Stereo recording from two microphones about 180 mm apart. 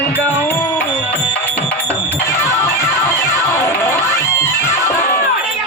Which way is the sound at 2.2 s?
15° left (ahead or behind).